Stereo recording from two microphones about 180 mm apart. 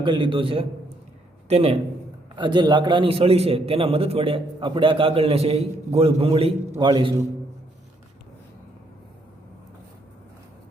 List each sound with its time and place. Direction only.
0.0 s a man's voice: 25° right (ahead or behind)